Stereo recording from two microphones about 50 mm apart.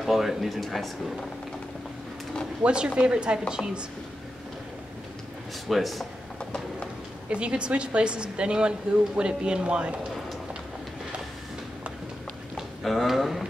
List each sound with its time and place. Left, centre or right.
0.0 s speech: centre
2.6 s a woman's voice: centre
5.7 s speech: centre
7.2 s a woman's voice: right
12.8 s speech: centre